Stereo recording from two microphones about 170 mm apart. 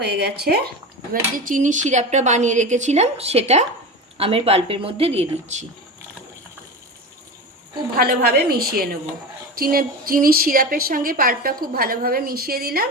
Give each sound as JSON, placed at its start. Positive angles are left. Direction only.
{"t": 0.0, "sound": "speech", "side_deg": -75}
{"t": 1.5, "sound": "a woman's voice", "side_deg": -50}
{"t": 7.9, "sound": "a woman's voice", "side_deg": -60}